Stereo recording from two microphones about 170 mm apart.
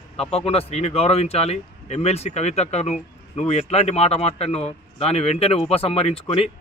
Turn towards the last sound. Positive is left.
turn(degrees=35)  # may be behind; listen again after turning